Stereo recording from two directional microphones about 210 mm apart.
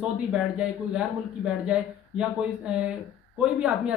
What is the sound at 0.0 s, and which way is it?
Speech, 5° right (ahead or behind).